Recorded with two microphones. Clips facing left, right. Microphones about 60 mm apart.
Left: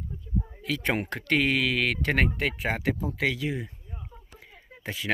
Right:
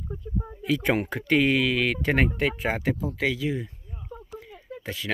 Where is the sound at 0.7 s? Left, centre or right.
Centre.